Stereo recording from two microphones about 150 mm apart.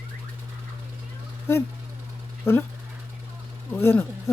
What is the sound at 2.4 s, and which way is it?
Speech, 15° left (ahead or behind).